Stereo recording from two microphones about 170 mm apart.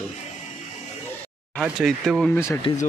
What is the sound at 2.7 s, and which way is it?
Speech, 30° left (ahead or behind).